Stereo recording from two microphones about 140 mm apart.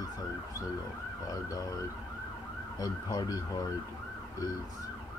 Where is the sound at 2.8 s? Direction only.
25° left (ahead or behind).